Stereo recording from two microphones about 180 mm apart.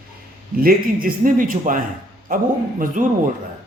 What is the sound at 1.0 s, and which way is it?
Speech, 50° right (ahead or behind).